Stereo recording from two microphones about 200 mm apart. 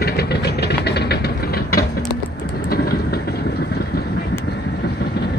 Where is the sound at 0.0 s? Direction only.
55° left (ahead or behind).